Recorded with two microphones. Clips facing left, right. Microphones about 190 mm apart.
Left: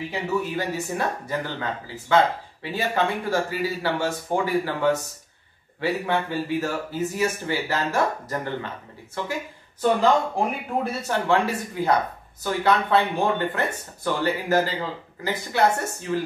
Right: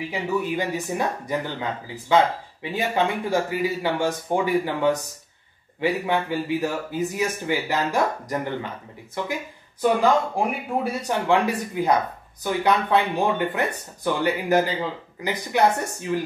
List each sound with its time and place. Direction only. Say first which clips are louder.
0.1 s speech: right 1 dB; 10° right (ahead or behind)
5.8 s speech: right 1 dB; 15° right (ahead or behind)